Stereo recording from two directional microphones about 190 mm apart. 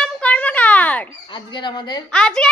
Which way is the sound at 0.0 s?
5° left (ahead or behind).